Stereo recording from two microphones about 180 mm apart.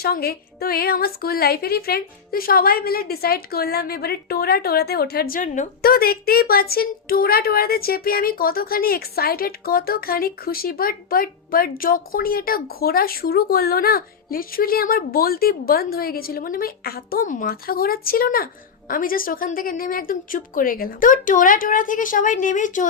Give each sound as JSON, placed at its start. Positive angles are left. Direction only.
{"t": 0.0, "sound": "a woman's voice", "side_deg": 60}